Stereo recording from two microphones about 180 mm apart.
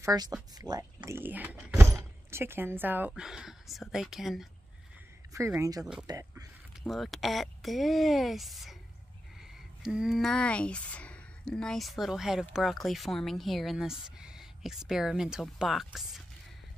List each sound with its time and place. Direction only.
0.0 s speech: 20° right (ahead or behind); by 4.5 s centre (ahead or behind)
5.3 s speech: 15° right (ahead or behind)
6.9 s speech: centre (ahead or behind)
9.8 s speech: 5° right (ahead or behind)